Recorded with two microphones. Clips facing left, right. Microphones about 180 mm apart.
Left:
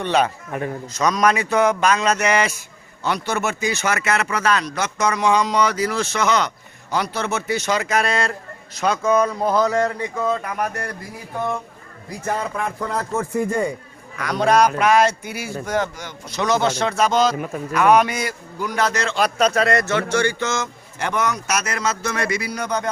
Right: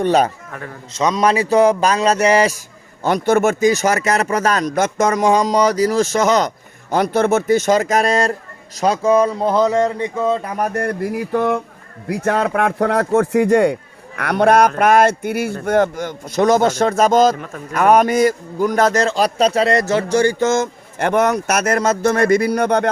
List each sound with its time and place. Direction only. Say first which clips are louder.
0.0 s speech: right 4 dB; 40° right (ahead or behind)
0.5 s speech: left 6 dB; 15° left (ahead or behind)
0.9 s speech: right 3 dB; 25° right (ahead or behind)
3.0 s a man's voice: right 8 dB; 50° right (ahead or behind)
10.8 s speech: right 11 dB; 60° right (ahead or behind); by 13.7 s 80° right
14.2 s a man's voice: right 4 dB; 60° right (ahead or behind)
17.3 s speech: left 4 dB; 10° left (ahead or behind)
17.7 s a man's voice: right 4 dB; 45° right (ahead or behind); by 22.9 s 60° right (ahead or behind)